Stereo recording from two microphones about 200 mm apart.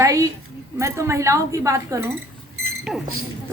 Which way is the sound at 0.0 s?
15° right (ahead or behind).